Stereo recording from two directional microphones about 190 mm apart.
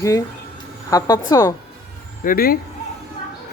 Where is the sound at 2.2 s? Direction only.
50° left (ahead or behind).